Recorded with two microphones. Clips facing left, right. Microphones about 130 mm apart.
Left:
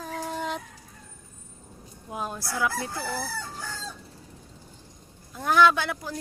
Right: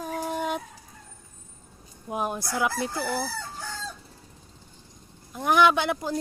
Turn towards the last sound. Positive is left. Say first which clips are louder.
# right 3 dB
turn(degrees=-25)  # may be behind; listen again after turning